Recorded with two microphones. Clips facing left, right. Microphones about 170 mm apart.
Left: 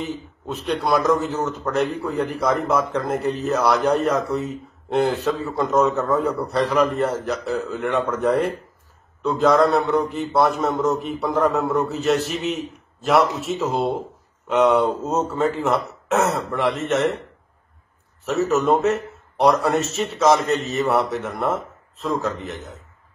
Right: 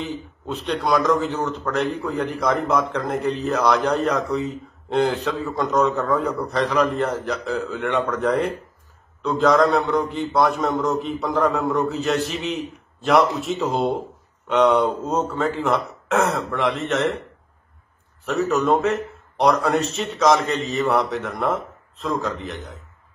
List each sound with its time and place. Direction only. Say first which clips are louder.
0.5 s a man's voice: even; 5° left (ahead or behind)
18.2 s a man's voice: left 1 dB; centre (ahead or behind)